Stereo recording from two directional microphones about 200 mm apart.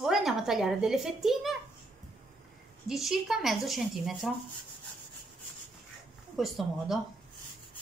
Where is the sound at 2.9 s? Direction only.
Centre (ahead or behind).